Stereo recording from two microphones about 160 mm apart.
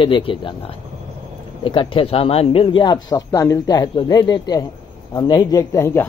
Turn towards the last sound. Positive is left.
turn(degrees=15)  # may be behind; listen again after turning